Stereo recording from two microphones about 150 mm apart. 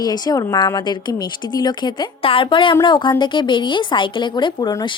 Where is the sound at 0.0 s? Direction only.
25° left (ahead or behind).